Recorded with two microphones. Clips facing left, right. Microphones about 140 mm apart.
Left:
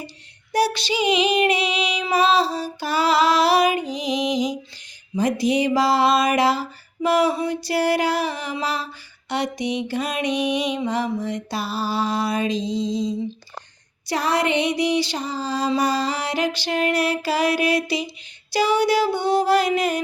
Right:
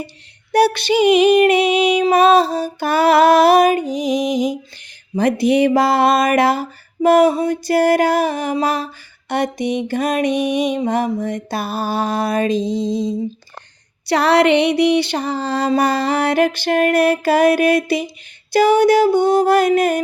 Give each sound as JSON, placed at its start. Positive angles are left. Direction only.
{"t": 0.5, "sound": "music", "side_deg": -60}
{"t": 5.1, "sound": "music", "side_deg": -60}
{"t": 14.1, "sound": "music", "side_deg": -70}